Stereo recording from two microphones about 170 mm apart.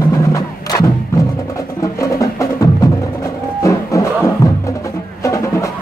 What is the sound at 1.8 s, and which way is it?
Music, 20° left (ahead or behind).